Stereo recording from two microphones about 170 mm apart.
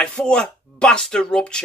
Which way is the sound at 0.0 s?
5° left (ahead or behind).